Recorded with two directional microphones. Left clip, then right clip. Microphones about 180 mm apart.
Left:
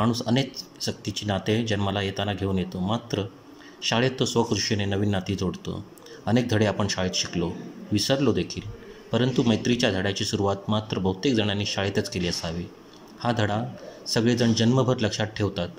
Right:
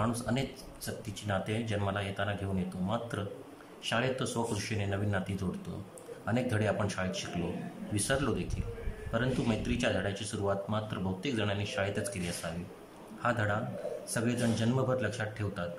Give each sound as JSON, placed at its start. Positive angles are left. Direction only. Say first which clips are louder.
{"t": 0.0, "sound": "speech", "louder": "left 8 dB", "side_deg": 25}